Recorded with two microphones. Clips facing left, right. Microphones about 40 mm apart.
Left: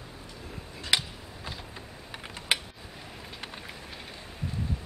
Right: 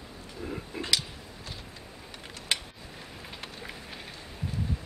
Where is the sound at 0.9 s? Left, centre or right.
Left.